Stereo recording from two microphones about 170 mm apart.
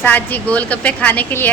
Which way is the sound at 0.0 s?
10° left (ahead or behind).